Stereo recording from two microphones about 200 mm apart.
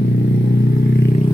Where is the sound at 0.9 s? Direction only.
50° left (ahead or behind).